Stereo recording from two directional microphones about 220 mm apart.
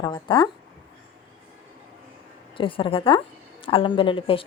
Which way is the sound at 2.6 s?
25° left (ahead or behind).